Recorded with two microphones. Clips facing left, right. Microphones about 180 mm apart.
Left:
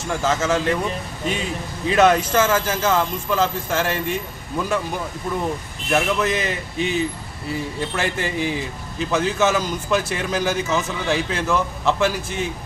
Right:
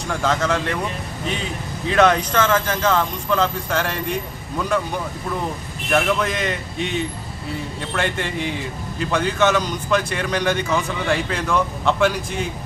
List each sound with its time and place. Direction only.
0.1 s a man's voice: 5° left (ahead or behind)
2.0 s a man's voice: 5° left (ahead or behind)
5.9 s a man's voice: 5° left (ahead or behind)